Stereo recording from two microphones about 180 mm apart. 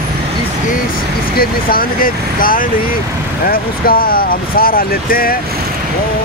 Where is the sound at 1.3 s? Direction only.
55° left (ahead or behind).